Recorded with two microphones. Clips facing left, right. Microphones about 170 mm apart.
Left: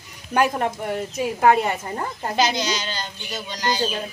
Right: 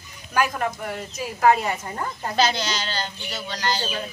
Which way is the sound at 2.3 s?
15° left (ahead or behind).